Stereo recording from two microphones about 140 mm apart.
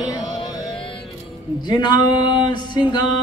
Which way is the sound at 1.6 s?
30° left (ahead or behind).